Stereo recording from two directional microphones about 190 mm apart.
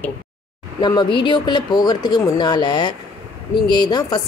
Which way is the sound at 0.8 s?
25° left (ahead or behind).